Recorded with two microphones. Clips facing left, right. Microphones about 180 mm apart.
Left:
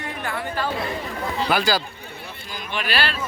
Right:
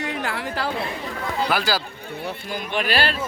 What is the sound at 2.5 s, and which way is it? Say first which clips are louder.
Speech: right 3 dB; 50° right (ahead or behind).